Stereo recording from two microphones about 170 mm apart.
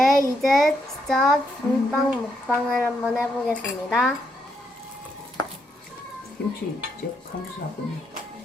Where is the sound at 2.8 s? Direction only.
5° right (ahead or behind).